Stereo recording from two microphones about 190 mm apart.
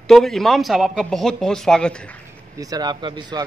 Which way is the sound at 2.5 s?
20° right (ahead or behind).